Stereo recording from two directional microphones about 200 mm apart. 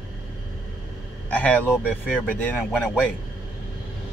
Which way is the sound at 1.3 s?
10° left (ahead or behind).